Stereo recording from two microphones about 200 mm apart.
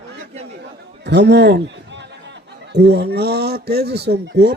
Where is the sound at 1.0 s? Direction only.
60° right (ahead or behind).